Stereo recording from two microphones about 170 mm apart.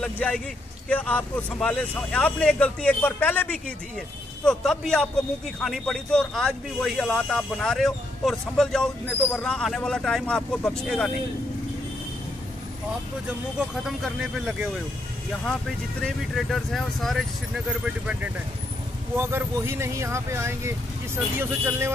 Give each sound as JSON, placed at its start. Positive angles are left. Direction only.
{"t": 0.0, "sound": "speech", "side_deg": 5}
{"t": 13.6, "sound": "speech", "side_deg": 0}
{"t": 16.0, "sound": "speech", "side_deg": 0}